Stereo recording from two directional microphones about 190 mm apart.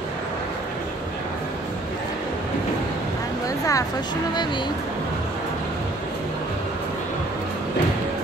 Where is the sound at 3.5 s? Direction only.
15° left (ahead or behind).